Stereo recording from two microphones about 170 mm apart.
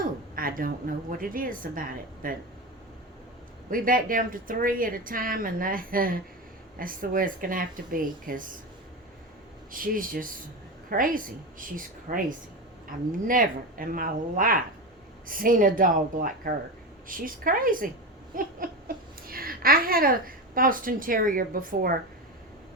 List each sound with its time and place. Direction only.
0.0 s a woman's voice: 55° right (ahead or behind)
3.7 s a woman's voice: 55° right (ahead or behind)
9.7 s a woman's voice: 55° right (ahead or behind)